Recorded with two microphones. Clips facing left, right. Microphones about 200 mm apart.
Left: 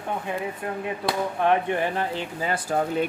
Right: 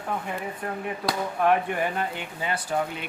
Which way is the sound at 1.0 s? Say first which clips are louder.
Even; 25° left (ahead or behind).